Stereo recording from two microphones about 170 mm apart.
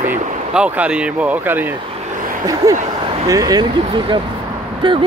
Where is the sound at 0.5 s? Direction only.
10° right (ahead or behind).